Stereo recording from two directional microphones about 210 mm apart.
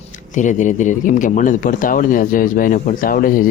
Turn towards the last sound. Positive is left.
turn(degrees=40)  # may be behind; listen again after turning